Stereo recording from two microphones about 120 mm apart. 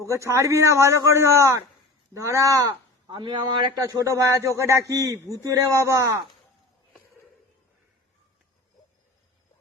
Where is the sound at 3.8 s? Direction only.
25° right (ahead or behind).